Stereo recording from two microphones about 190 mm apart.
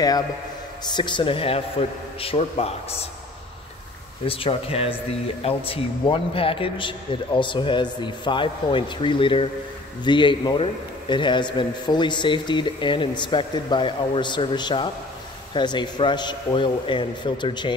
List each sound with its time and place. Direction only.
0.9 s a man's voice: 25° left (ahead or behind)
4.3 s a man's voice: 30° left (ahead or behind)